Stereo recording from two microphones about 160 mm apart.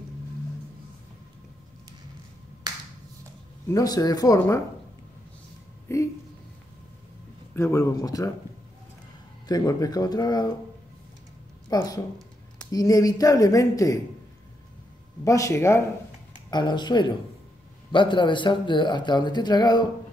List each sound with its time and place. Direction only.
3.6 s speech: 20° left (ahead or behind)
5.9 s speech: 20° left (ahead or behind)
7.5 s speech: 15° left (ahead or behind)
9.5 s speech: 25° left (ahead or behind)
11.7 s speech: 25° left (ahead or behind)
15.2 s speech: 20° left (ahead or behind)